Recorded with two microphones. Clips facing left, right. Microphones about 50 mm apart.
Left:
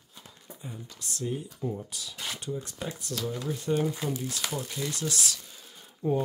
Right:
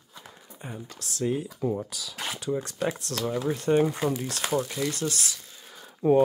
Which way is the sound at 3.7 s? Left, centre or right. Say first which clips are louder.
Right 5 dB; right.